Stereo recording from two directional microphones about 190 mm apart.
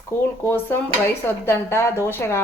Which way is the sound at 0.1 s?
10° left (ahead or behind).